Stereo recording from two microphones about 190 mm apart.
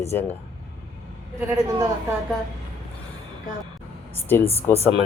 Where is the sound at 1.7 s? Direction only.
20° right (ahead or behind).